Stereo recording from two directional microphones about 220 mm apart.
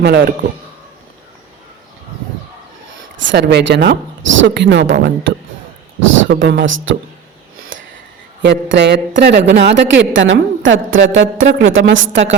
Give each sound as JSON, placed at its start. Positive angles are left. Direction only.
{"t": 0.0, "sound": "speech", "side_deg": -50}
{"t": 3.3, "sound": "speech", "side_deg": -50}
{"t": 6.2, "sound": "a woman's voice", "side_deg": -55}
{"t": 7.7, "sound": "a sound", "side_deg": -60}
{"t": 8.4, "sound": "a woman's voice", "side_deg": -55}